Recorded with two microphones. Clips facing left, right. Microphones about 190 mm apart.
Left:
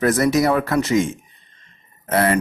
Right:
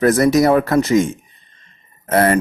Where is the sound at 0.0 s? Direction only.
40° right (ahead or behind).